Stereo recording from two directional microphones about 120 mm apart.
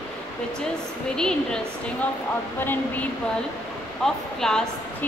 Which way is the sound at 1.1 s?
5° left (ahead or behind).